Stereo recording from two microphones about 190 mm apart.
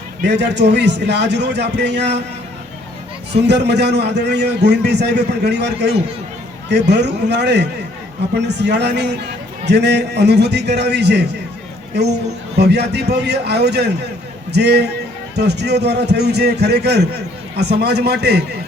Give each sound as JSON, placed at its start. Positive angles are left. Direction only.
{"t": 0.2, "sound": "a man's voice", "side_deg": -60}
{"t": 3.3, "sound": "a man's voice", "side_deg": -60}
{"t": 12.5, "sound": "a man's voice", "side_deg": -60}